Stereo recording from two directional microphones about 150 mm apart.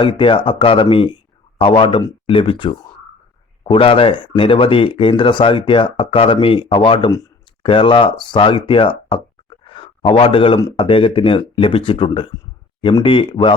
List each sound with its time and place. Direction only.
0.0 s speech: 35° left (ahead or behind)
9.6 s a sound: 35° left (ahead or behind)
10.8 s speech: 35° left (ahead or behind)